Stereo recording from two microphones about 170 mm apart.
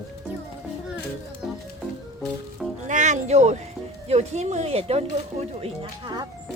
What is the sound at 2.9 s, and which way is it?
Music, 45° right (ahead or behind).